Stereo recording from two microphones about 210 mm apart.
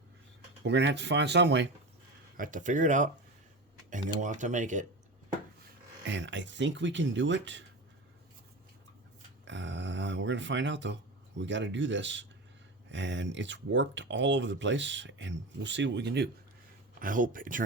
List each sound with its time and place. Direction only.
0.6 s speech: 55° right (ahead or behind)
2.4 s speech: 40° right (ahead or behind)
6.1 s speech: 60° right (ahead or behind)
9.5 s grunt: 60° right (ahead or behind)
11.3 s speech: 60° right (ahead or behind)
17.0 s speech: 40° right (ahead or behind)